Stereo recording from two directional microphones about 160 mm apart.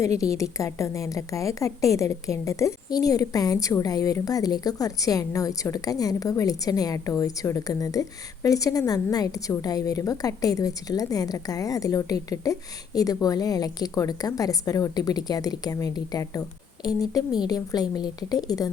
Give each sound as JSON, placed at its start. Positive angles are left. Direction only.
{"t": 0.0, "sound": "a woman's voice", "side_deg": 20}